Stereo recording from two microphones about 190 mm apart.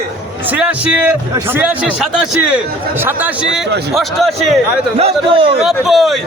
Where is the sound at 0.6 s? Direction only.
5° right (ahead or behind).